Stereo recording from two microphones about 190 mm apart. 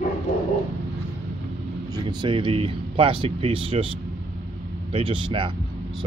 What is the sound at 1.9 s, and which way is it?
Speech, 20° right (ahead or behind).